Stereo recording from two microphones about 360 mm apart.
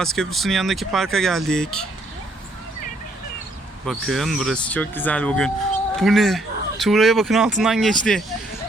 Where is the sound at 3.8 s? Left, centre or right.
Centre.